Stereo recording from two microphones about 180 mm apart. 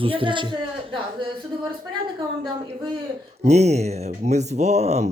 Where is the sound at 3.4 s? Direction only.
40° right (ahead or behind).